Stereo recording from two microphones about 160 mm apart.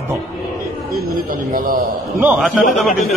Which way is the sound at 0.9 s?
60° right (ahead or behind).